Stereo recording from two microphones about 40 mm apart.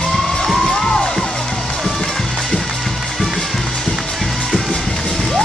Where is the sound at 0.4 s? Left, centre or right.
Centre.